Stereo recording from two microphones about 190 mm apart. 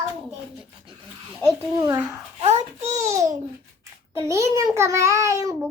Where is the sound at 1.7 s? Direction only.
15° right (ahead or behind).